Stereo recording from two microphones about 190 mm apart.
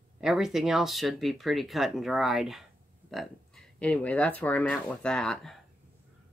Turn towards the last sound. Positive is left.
turn(degrees=0)  # may be behind; listen again after turning